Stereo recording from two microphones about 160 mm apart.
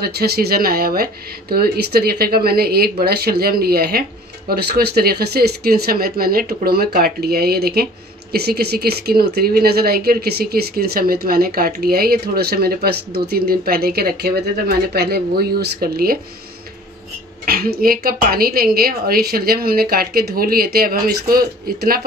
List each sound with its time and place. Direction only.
0.0 s speech: 75° right (ahead or behind)
17.5 s speech: 75° right (ahead or behind)